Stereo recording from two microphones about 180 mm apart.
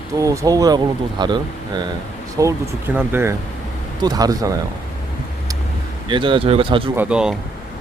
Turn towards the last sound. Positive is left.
turn(degrees=-5)  # may be behind; listen again after turning